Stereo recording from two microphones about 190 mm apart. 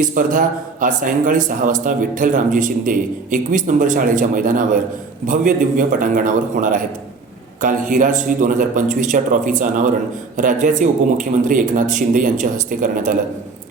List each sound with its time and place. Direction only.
0.1 s a man's voice: 45° right (ahead or behind)